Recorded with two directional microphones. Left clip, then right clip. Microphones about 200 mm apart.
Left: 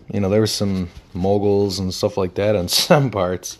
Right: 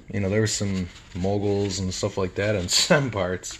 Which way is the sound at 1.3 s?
55° left (ahead or behind).